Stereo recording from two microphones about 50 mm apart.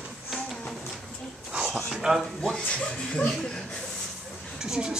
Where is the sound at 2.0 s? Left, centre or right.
Centre.